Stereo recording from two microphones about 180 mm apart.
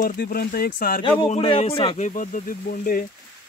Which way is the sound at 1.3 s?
30° left (ahead or behind).